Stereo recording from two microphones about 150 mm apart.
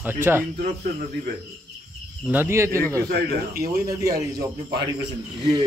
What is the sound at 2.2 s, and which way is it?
Speech, 15° right (ahead or behind).